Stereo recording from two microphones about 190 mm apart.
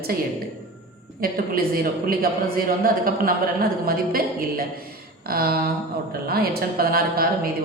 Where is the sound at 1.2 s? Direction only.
50° right (ahead or behind).